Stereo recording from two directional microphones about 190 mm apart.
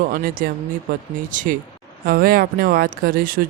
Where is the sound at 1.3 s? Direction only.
45° right (ahead or behind).